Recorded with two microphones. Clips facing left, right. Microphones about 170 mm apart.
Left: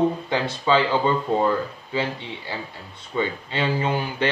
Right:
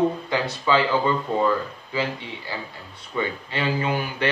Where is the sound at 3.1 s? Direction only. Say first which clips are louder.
Left 2 dB; 25° left (ahead or behind).